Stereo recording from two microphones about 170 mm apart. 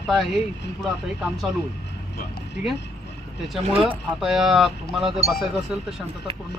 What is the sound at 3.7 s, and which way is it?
Speech, 35° right (ahead or behind).